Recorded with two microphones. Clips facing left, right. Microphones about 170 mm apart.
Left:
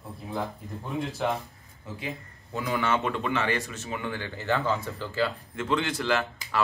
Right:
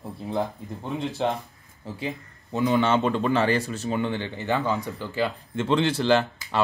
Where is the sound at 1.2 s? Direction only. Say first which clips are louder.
Right 2 dB; 30° right (ahead or behind).